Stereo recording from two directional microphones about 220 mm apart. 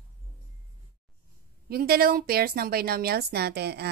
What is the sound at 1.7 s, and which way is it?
A woman's voice, 45° right (ahead or behind).